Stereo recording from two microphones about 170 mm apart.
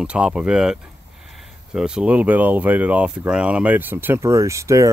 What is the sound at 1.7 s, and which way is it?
Speech, 5° right (ahead or behind).